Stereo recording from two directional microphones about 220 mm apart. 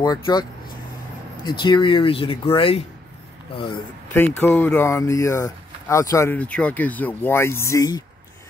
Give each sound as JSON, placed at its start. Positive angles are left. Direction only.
{"t": 0.0, "sound": "speech", "side_deg": 20}
{"t": 1.6, "sound": "speech", "side_deg": 20}
{"t": 4.4, "sound": "speech", "side_deg": 10}